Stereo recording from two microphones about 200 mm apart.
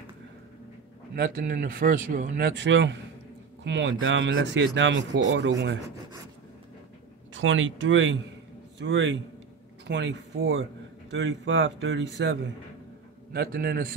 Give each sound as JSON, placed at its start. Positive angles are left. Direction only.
{"t": 1.1, "sound": "a man's voice", "side_deg": -40}
{"t": 7.3, "sound": "a man's voice", "side_deg": -75}
{"t": 13.3, "sound": "speech", "side_deg": -50}